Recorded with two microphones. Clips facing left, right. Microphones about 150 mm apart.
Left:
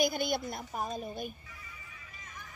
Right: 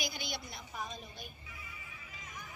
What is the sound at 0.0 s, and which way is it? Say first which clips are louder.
Speech: left 12 dB; 50° left (ahead or behind).